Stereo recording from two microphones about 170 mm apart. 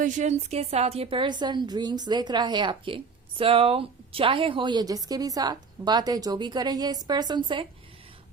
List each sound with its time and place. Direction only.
0.0 s a woman's voice: 45° right (ahead or behind); by 7.7 s 30° right (ahead or behind)